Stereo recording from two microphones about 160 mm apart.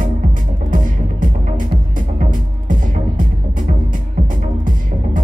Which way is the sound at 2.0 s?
55° right (ahead or behind).